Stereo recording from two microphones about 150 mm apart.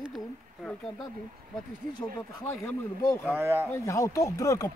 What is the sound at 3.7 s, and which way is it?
Speech, 20° left (ahead or behind).